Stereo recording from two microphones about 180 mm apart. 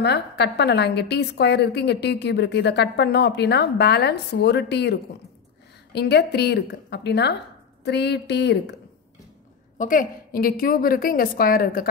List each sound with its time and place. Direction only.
0.0 s a woman's voice: 70° left (ahead or behind)
5.9 s a woman's voice: 65° left (ahead or behind)
9.8 s a woman's voice: 50° left (ahead or behind)